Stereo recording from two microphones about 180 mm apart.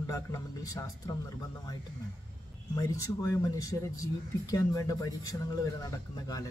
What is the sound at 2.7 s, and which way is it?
Speech, 15° left (ahead or behind).